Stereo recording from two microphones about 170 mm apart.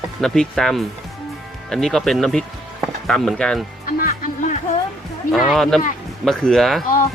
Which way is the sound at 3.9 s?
55° left (ahead or behind).